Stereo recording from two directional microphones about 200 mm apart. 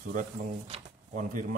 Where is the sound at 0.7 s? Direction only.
40° right (ahead or behind).